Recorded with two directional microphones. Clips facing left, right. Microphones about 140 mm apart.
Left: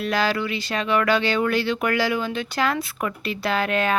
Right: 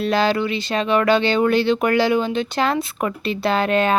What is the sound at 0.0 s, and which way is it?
Speech, 25° right (ahead or behind).